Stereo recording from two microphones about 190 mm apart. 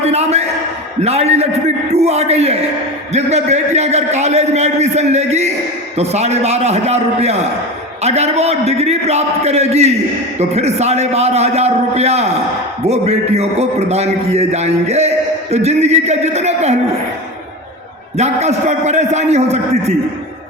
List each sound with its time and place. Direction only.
0.0 s a sound: 35° right (ahead or behind)
1.0 s a man's voice: 35° right (ahead or behind)
18.2 s a man's voice: 35° right (ahead or behind)